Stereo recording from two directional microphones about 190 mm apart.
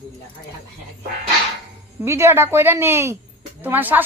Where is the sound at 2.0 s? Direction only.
15° right (ahead or behind).